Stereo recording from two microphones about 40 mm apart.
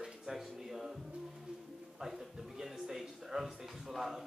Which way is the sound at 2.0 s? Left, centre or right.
Centre.